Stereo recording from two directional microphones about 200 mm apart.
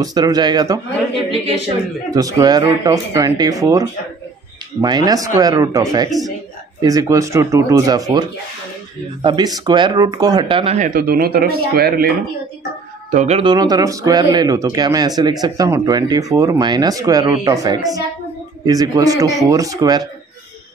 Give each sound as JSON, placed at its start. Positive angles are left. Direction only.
{"t": 0.0, "sound": "speech", "side_deg": -20}
{"t": 2.0, "sound": "speech", "side_deg": -15}
{"t": 4.8, "sound": "speech", "side_deg": -20}
{"t": 13.1, "sound": "speech", "side_deg": -35}
{"t": 13.4, "sound": "speech", "side_deg": -20}